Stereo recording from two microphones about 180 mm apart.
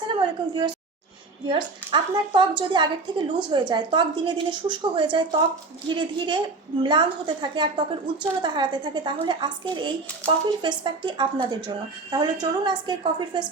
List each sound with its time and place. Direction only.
0.1 s a woman's voice: 25° right (ahead or behind)